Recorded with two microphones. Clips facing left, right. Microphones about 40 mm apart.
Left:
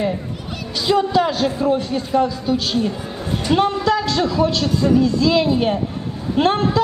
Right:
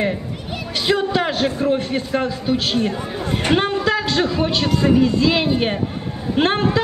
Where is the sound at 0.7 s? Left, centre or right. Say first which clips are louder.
Left 2 dB; right.